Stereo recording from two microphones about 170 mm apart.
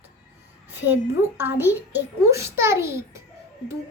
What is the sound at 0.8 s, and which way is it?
A child's voice, 10° right (ahead or behind).